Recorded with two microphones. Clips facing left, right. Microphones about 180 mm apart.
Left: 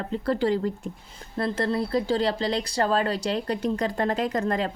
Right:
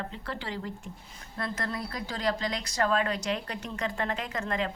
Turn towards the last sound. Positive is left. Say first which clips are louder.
# left 7 dB
turn(degrees=40)  # may be behind; listen again after turning